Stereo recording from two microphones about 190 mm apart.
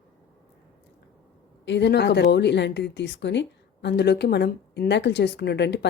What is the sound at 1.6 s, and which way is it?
Speech, 65° left (ahead or behind).